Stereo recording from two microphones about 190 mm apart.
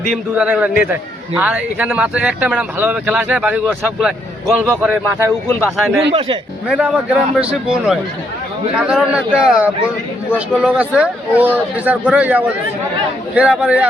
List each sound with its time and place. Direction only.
0.1 s a man's voice: 5° right (ahead or behind)
6.1 s speech: 25° right (ahead or behind)
6.7 s a man's voice: 5° right (ahead or behind)